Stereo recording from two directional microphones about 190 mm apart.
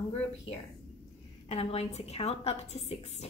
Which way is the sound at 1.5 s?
35° left (ahead or behind).